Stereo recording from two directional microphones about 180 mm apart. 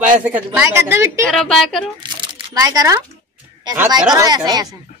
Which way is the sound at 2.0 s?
25° right (ahead or behind).